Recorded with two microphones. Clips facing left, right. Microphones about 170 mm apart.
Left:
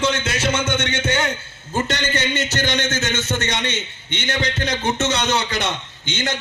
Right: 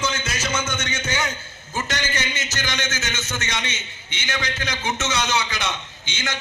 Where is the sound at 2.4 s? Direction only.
60° left (ahead or behind).